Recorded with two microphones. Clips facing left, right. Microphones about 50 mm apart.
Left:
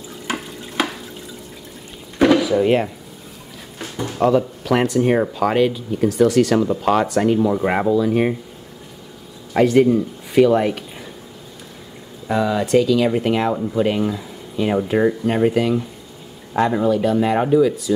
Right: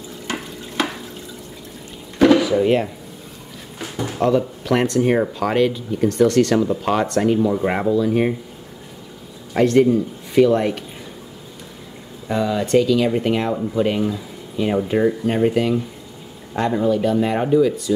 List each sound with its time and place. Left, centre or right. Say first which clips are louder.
0.3 s water: left 2 dB; centre
0.8 s drip: left 1 dB; centre
2.1 s drawer open or close: right 1 dB; centre
2.6 s speech: left 1 dB; centre
3.8 s drawer open or close: left 2 dB; centre
4.3 s speech: even; centre
9.5 s speech: left 1 dB; centre
12.3 s speech: left 1 dB; centre